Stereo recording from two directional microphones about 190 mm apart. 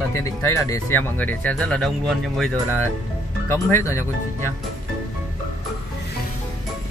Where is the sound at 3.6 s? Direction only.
15° left (ahead or behind).